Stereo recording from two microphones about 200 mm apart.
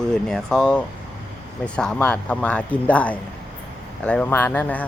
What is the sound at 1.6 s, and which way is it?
Speech, 5° left (ahead or behind).